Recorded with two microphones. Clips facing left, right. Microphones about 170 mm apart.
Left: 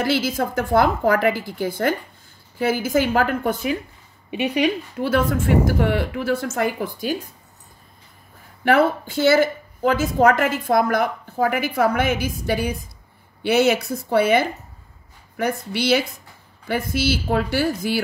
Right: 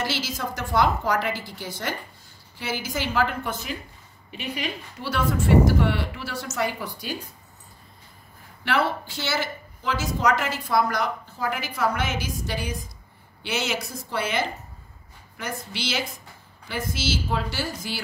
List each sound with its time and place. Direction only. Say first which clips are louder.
0.0 s a woman's voice: left 8 dB; 55° left (ahead or behind)
8.6 s a woman's voice: left 7 dB; 50° left (ahead or behind)
15.7 s speech: left 10 dB; 55° left (ahead or behind)